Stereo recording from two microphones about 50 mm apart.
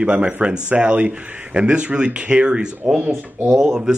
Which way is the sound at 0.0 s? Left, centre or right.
Right.